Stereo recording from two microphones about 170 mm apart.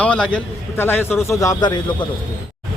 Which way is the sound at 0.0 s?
5° left (ahead or behind).